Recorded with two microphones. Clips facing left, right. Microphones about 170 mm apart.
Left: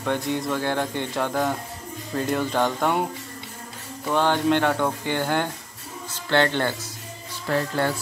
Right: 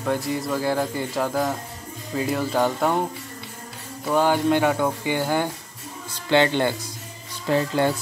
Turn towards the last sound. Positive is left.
turn(degrees=-15)  # may be behind; listen again after turning